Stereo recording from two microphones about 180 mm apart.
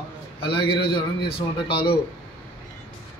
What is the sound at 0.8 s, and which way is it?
A man's voice, 60° left (ahead or behind).